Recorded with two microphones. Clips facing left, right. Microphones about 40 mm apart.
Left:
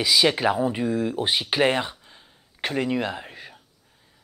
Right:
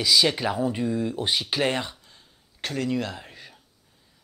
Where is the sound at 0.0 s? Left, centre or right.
Centre.